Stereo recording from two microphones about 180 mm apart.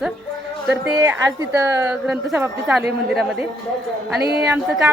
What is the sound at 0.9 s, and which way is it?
A woman's voice, 15° right (ahead or behind).